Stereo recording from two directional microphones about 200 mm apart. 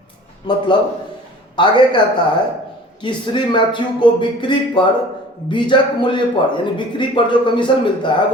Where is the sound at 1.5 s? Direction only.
25° left (ahead or behind).